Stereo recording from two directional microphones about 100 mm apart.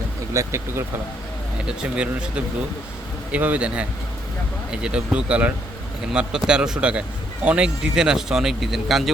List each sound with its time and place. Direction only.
0.3 s speech: 25° right (ahead or behind)
1.6 s speech: 10° right (ahead or behind)